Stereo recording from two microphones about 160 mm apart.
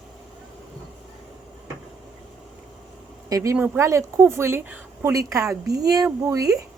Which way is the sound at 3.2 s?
20° right (ahead or behind).